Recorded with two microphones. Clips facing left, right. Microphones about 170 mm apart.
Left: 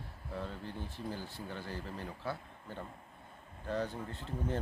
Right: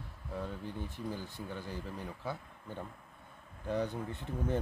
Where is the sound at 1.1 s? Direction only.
15° right (ahead or behind).